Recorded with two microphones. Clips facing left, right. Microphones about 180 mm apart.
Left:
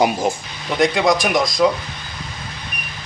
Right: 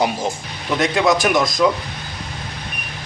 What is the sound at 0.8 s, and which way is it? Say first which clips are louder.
Speech: left 1 dB; centre (ahead or behind).